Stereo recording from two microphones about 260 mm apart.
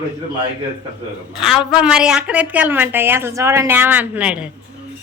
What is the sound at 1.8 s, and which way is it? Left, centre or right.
A woman's voice, centre.